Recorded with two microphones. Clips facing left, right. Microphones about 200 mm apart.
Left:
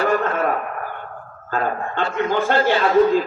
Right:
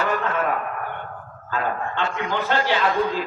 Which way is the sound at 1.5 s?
45° left (ahead or behind).